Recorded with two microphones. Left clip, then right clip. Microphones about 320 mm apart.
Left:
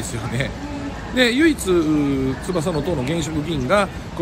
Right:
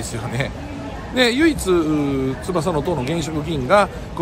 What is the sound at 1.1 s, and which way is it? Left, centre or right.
Speech, centre.